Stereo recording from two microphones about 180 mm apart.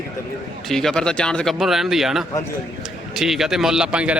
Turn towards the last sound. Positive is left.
turn(degrees=-5)  # may be behind; listen again after turning